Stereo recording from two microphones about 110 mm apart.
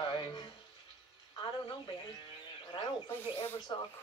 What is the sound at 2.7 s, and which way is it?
Snake, 45° left (ahead or behind).